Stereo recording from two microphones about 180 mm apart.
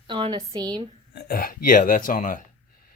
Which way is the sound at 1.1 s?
55° left (ahead or behind).